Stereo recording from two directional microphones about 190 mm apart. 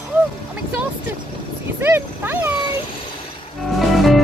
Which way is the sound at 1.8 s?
10° right (ahead or behind).